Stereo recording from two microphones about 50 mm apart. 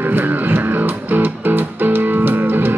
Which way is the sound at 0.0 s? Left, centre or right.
Right.